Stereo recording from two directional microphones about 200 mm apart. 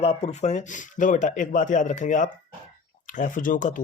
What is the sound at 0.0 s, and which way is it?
Speech, 30° left (ahead or behind).